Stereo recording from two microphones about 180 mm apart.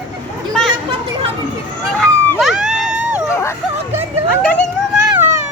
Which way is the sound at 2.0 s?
Centre (ahead or behind).